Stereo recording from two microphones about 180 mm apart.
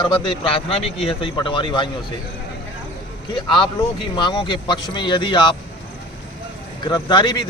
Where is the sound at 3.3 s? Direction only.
25° left (ahead or behind).